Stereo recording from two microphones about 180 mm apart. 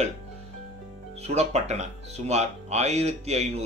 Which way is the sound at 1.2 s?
35° right (ahead or behind).